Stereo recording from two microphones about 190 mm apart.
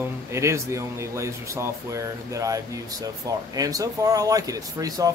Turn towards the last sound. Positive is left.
turn(degrees=-20)  # may be behind; listen again after turning